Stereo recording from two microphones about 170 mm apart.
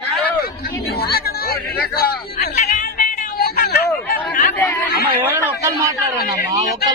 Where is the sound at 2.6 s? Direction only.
50° left (ahead or behind).